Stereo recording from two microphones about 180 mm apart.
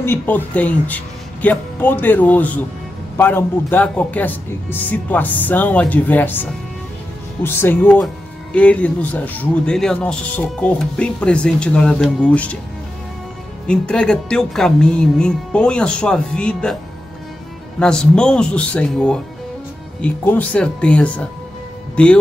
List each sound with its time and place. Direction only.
0.0 s speech: 10° left (ahead or behind)
13.7 s speech: 5° left (ahead or behind)
17.7 s speech: 5° left (ahead or behind)